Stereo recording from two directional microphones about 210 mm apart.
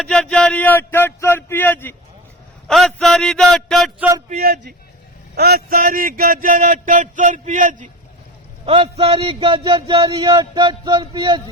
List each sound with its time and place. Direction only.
0.0 s a man's voice: 5° left (ahead or behind)
4.3 s a man's voice: 45° right (ahead or behind)
8.6 s a man's voice: 25° right (ahead or behind)